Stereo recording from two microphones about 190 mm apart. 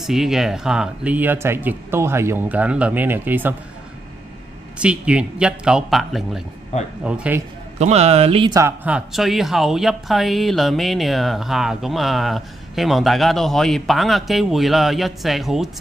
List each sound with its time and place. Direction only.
0.0 s speech: centre (ahead or behind)
4.7 s speech: 5° right (ahead or behind)
7.8 s speech: 35° right (ahead or behind)
8.5 s speech: 10° right (ahead or behind)